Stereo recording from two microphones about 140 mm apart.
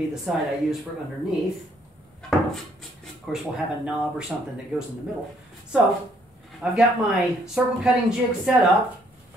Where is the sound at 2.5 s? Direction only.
Centre (ahead or behind).